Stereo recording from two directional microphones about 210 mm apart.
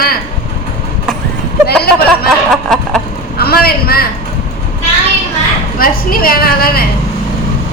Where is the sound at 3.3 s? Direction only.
45° left (ahead or behind).